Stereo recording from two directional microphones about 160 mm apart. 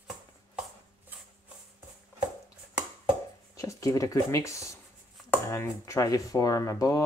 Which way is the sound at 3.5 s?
20° left (ahead or behind).